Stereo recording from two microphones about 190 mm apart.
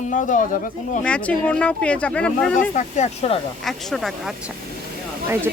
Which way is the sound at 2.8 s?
40° left (ahead or behind).